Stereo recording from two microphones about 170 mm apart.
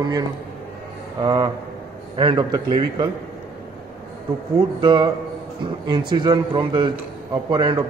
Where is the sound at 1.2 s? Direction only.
25° right (ahead or behind).